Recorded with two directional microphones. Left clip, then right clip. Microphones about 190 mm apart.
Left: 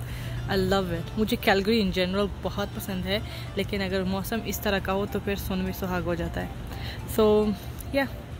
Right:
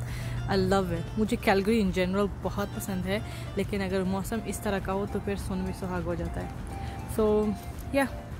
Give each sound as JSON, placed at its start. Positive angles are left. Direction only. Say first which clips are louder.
{"t": 0.5, "sound": "speech", "louder": "left 1 dB", "side_deg": -5}
{"t": 7.9, "sound": "speech", "louder": "even", "side_deg": -5}